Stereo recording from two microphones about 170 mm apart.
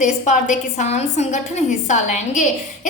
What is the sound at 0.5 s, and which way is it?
A woman's voice, 40° left (ahead or behind).